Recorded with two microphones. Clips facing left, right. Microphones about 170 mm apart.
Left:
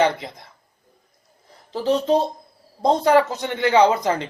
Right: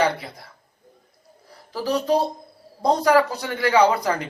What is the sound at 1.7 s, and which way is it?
Speech, 25° left (ahead or behind).